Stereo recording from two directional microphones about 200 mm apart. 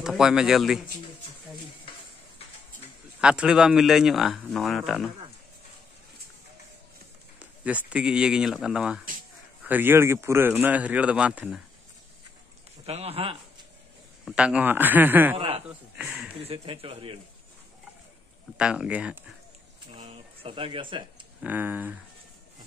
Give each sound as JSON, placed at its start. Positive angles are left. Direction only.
{"t": 0.0, "sound": "speech", "side_deg": -5}
{"t": 3.2, "sound": "speech", "side_deg": -5}
{"t": 7.3, "sound": "speech", "side_deg": -5}
{"t": 12.8, "sound": "speech", "side_deg": -30}
{"t": 14.2, "sound": "speech", "side_deg": -5}
{"t": 15.3, "sound": "speech", "side_deg": -30}
{"t": 16.0, "sound": "speech", "side_deg": -10}
{"t": 16.4, "sound": "speech", "side_deg": -25}
{"t": 18.6, "sound": "speech", "side_deg": -5}
{"t": 19.9, "sound": "speech", "side_deg": -30}
{"t": 21.4, "sound": "speech", "side_deg": -10}